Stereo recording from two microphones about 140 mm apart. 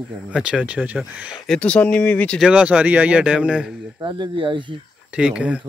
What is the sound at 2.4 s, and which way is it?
Speech, 10° right (ahead or behind).